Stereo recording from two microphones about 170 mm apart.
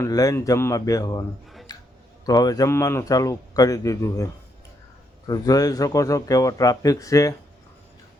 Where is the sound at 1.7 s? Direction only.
25° left (ahead or behind).